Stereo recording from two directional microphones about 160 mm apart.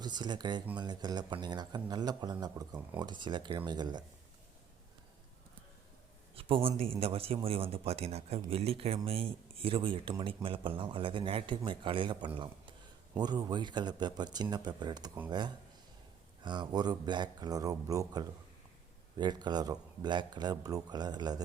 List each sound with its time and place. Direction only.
0.0 s speech: 25° right (ahead or behind)
6.3 s a man's voice: 35° right (ahead or behind)